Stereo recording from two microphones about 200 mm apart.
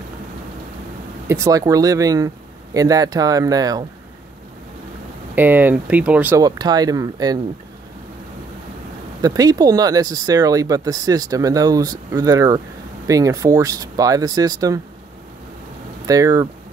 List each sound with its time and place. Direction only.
1.2 s speech: 15° right (ahead or behind)
5.3 s speech: 10° right (ahead or behind)
9.2 s speech: 20° right (ahead or behind)
16.1 s speech: 15° right (ahead or behind)